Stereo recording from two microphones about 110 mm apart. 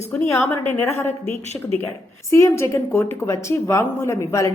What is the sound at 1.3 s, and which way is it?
Speech, 90° left.